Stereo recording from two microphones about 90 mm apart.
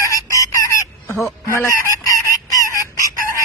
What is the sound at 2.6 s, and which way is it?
Chicken, 35° right (ahead or behind).